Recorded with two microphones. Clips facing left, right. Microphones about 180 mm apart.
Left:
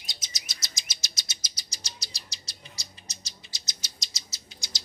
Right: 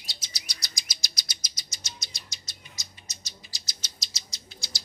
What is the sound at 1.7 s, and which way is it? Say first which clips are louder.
Bird: even; 30° left (ahead or behind).